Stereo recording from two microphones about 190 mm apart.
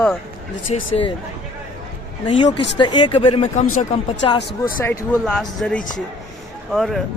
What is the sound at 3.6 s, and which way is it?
Speech, 90° left.